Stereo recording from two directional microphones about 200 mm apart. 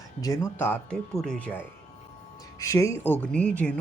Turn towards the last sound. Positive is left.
turn(degrees=5)  # may be behind; listen again after turning